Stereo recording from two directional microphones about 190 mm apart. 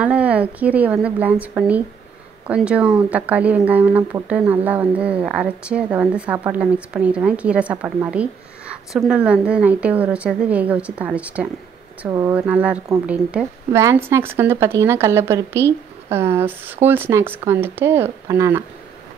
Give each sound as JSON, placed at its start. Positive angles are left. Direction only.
{"t": 0.0, "sound": "speech", "side_deg": -5}